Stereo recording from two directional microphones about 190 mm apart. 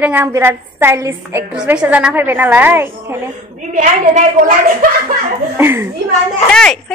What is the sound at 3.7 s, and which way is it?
A woman's voice, 45° right (ahead or behind).